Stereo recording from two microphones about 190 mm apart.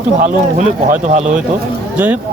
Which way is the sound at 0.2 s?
40° right (ahead or behind).